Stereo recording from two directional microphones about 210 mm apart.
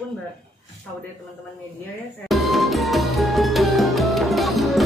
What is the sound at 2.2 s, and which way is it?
Music, centre (ahead or behind).